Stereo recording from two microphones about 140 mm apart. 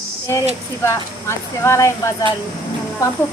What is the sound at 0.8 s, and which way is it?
Speech, 20° left (ahead or behind).